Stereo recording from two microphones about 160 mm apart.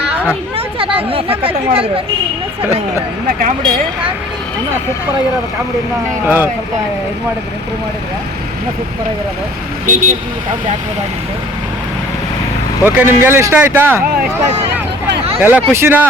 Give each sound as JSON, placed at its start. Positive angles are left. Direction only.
{"t": 1.1, "sound": "speech", "side_deg": -35}
{"t": 6.2, "sound": "speech", "side_deg": -10}
{"t": 9.8, "sound": "speech", "side_deg": -55}
{"t": 12.8, "sound": "speech", "side_deg": -15}